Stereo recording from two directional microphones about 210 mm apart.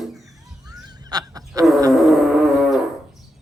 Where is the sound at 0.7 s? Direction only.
15° right (ahead or behind).